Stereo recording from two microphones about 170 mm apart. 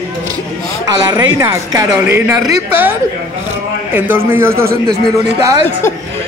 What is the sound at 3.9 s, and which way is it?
A man's voice, 10° right (ahead or behind).